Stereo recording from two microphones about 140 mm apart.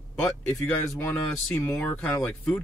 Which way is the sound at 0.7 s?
15° left (ahead or behind).